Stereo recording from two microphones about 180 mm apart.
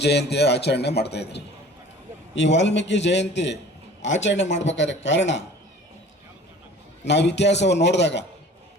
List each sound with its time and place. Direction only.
0.0 s a man's voice: 70° left (ahead or behind)
7.0 s a man's voice: 75° left (ahead or behind)